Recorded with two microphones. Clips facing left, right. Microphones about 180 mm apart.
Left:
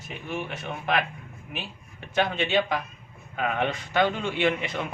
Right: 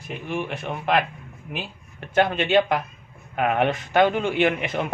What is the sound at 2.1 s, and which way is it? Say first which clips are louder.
Speech: right 5 dB; 55° right (ahead or behind).